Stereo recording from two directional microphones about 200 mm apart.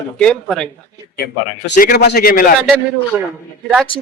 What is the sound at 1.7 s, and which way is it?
Speech, 45° left (ahead or behind).